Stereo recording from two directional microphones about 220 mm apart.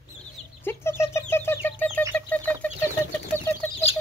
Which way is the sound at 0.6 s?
10° left (ahead or behind).